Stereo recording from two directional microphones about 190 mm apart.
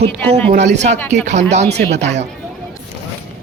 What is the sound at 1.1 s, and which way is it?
Speech, 35° right (ahead or behind).